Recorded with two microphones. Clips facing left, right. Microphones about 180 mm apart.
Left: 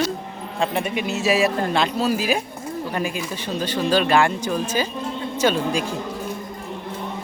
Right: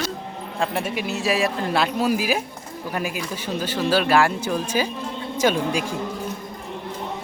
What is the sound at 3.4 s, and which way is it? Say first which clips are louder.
Speech: left 1 dB; 10° right (ahead or behind).